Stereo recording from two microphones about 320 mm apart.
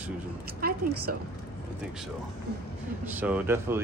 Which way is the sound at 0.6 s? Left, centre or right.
Right.